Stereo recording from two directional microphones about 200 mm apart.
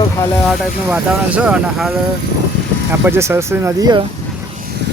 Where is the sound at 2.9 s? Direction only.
10° right (ahead or behind).